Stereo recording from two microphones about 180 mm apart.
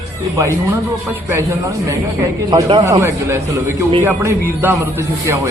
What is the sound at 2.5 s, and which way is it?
A man's voice, 25° right (ahead or behind).